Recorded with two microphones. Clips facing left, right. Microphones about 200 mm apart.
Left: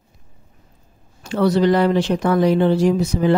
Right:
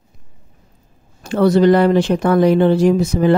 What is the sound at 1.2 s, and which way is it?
Speech, 50° right (ahead or behind).